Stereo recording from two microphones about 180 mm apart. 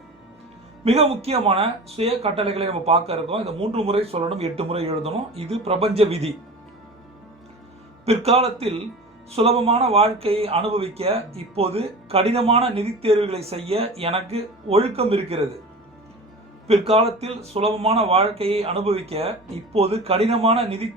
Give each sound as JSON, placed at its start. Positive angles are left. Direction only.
{"t": 0.9, "sound": "speech", "side_deg": -35}
{"t": 8.0, "sound": "speech", "side_deg": -35}
{"t": 16.6, "sound": "speech", "side_deg": -35}